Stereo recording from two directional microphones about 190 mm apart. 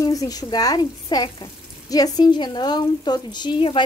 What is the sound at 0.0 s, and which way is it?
Speech, 20° left (ahead or behind).